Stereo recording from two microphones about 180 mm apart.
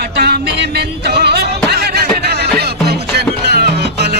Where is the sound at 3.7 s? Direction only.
65° right (ahead or behind).